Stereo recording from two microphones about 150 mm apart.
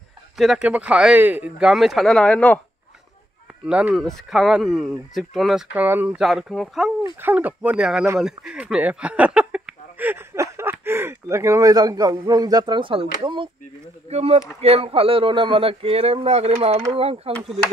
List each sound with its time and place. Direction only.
0.4 s speech: 5° right (ahead or behind)
3.6 s speech: 5° right (ahead or behind)
7.2 s speech: 10° right (ahead or behind); by 13.5 s 30° right (ahead or behind)
14.0 s speech: 45° right (ahead or behind)